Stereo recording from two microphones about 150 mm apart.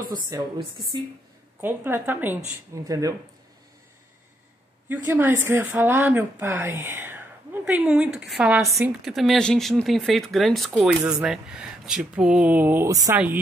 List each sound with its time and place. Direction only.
0.3 s speech: 25° right (ahead or behind)
1.6 s speech: 15° right (ahead or behind)
2.9 s speech: 25° right (ahead or behind)
4.8 s speech: 15° right (ahead or behind)
8.6 s speech: 20° right (ahead or behind)
9.0 s speech: centre (ahead or behind); by 13.2 s 20° right (ahead or behind)